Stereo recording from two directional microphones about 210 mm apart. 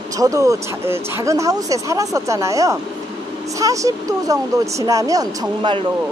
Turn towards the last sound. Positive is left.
turn(degrees=-20)  # may be behind; listen again after turning